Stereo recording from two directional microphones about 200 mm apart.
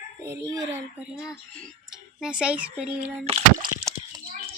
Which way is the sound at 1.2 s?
Centre (ahead or behind).